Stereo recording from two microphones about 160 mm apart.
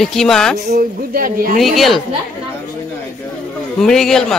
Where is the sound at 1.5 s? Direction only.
Centre (ahead or behind).